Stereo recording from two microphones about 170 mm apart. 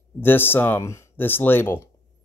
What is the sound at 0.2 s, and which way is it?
Speech, 10° left (ahead or behind).